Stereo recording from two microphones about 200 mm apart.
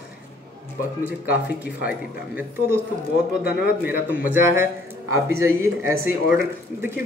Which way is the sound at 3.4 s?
55° left (ahead or behind).